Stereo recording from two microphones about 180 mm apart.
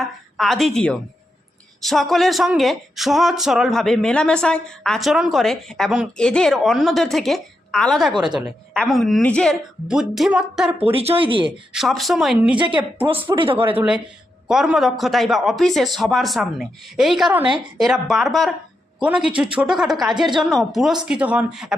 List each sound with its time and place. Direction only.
0.0 s a woman's voice: centre (ahead or behind)
10.9 s speech: 30° right (ahead or behind)
11.7 s speech: centre (ahead or behind)
13.3 s speech: 30° right (ahead or behind)
13.7 s speech: 5° right (ahead or behind)